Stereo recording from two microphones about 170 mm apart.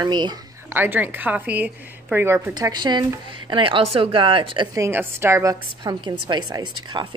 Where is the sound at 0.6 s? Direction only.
10° right (ahead or behind); by 4.6 s 30° right (ahead or behind).